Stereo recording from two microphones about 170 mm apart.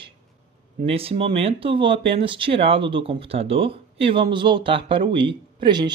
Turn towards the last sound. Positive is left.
turn(degrees=-25)  # may be behind; listen again after turning